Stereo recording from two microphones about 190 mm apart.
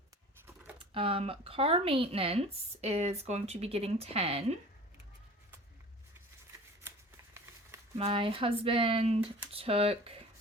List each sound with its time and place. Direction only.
0.9 s speech: 30° right (ahead or behind)
7.9 s speech: 30° right (ahead or behind)